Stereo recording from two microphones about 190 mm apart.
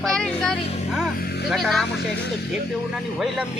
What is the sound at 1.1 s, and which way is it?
Speech, 55° left (ahead or behind).